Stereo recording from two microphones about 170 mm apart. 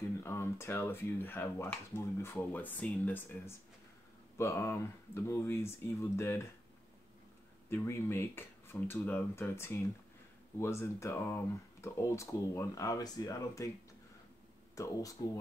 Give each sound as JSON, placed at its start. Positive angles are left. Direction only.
{"t": 0.2, "sound": "speech", "side_deg": 15}
{"t": 7.7, "sound": "speech", "side_deg": 15}
{"t": 14.8, "sound": "speech", "side_deg": 20}